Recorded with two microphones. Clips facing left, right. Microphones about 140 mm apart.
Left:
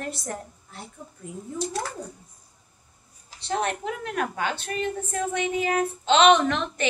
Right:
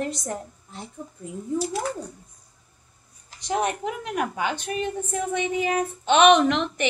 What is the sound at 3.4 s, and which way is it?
A woman's voice, 15° right (ahead or behind).